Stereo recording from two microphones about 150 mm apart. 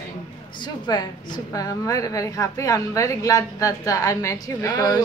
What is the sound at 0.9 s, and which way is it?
A woman's voice, 25° left (ahead or behind).